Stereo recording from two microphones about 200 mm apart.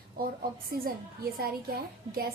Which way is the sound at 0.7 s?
50° right (ahead or behind).